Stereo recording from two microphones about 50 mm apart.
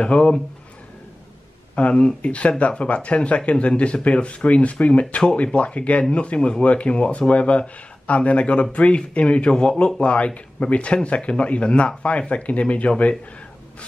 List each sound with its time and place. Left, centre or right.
0.0 s speech: left
1.8 s speech: left